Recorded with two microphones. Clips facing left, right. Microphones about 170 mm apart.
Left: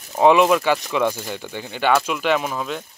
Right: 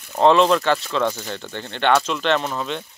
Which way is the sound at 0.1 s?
10° left (ahead or behind).